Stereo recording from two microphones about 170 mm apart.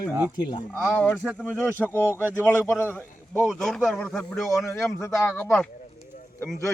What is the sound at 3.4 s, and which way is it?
Speech, centre (ahead or behind).